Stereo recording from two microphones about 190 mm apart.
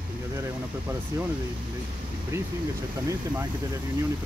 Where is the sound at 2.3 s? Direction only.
15° right (ahead or behind).